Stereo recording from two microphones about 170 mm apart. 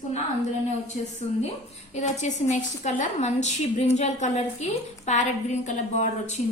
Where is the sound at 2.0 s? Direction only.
45° left (ahead or behind).